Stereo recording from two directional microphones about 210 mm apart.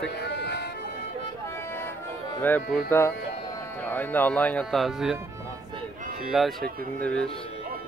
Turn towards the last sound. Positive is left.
turn(degrees=5)  # may be behind; listen again after turning